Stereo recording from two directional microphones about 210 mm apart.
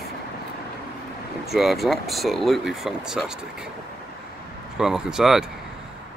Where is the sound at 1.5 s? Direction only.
Centre (ahead or behind).